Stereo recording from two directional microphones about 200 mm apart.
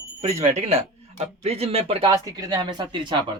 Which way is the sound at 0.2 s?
30° right (ahead or behind).